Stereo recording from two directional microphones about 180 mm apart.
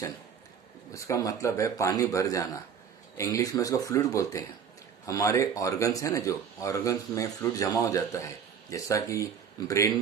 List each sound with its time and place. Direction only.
0.9 s speech: 15° left (ahead or behind)